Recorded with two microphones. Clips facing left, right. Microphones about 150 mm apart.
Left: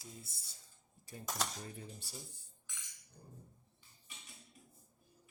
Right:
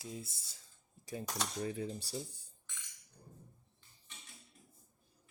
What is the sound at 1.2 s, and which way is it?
Cutlery, centre (ahead or behind).